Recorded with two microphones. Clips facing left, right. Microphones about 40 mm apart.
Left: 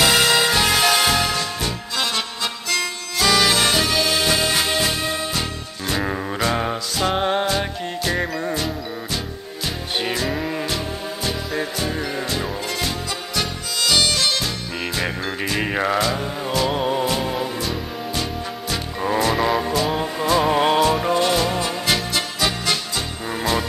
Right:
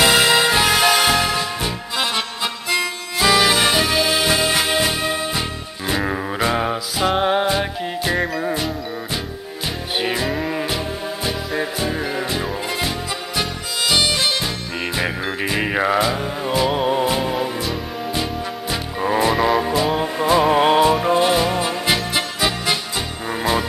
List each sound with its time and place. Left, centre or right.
0.0 s music: centre
9.9 s music: centre